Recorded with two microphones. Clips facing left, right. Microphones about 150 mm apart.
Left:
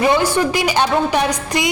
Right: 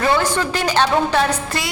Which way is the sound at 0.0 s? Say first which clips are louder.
Left 3 dB; 15° left (ahead or behind).